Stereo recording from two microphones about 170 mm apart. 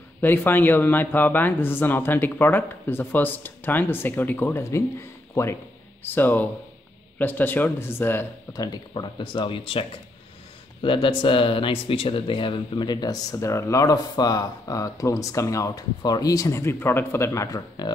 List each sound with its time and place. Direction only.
0.2 s speech: 10° left (ahead or behind)
8.7 s speech: 25° left (ahead or behind)